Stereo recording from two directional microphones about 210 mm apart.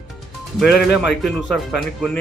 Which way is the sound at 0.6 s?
Centre (ahead or behind).